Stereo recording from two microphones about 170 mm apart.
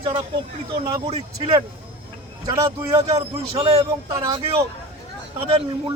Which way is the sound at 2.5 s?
20° right (ahead or behind).